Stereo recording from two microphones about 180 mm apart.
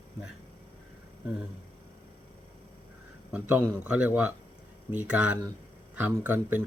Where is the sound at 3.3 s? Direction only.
10° right (ahead or behind).